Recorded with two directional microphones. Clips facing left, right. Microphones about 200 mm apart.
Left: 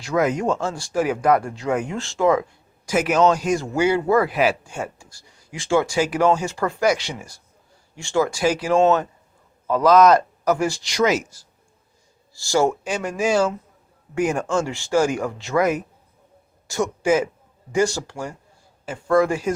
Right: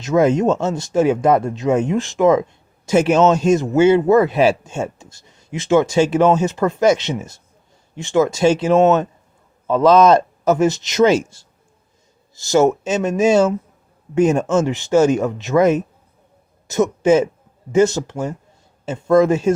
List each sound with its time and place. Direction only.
0.0 s speech: 25° right (ahead or behind)